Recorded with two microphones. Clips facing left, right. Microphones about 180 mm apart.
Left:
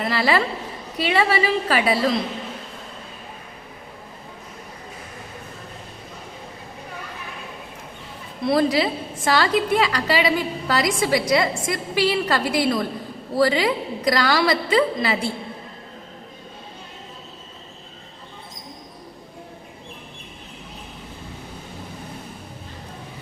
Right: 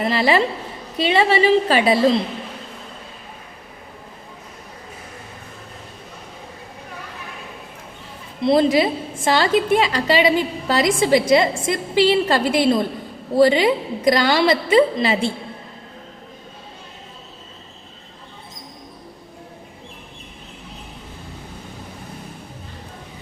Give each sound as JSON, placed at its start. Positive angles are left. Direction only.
{"t": 0.0, "sound": "a woman's voice", "side_deg": -20}
{"t": 8.4, "sound": "a woman's voice", "side_deg": -25}